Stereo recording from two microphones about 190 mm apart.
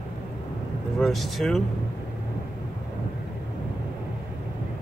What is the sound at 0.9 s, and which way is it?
Speech, centre (ahead or behind).